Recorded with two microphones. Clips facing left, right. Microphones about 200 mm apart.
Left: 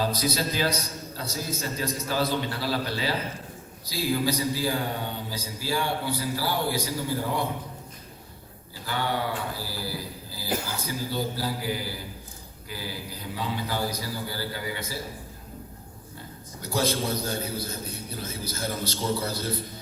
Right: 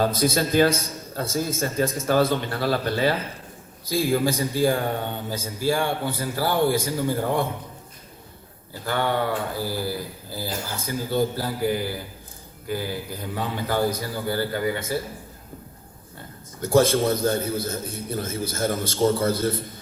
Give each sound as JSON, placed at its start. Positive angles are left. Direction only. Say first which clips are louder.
{"t": 0.2, "sound": "speech", "louder": "right 7 dB", "side_deg": -50}
{"t": 8.8, "sound": "a man's voice", "louder": "right 5 dB", "side_deg": -55}
{"t": 16.6, "sound": "speech", "louder": "right 8 dB", "side_deg": -50}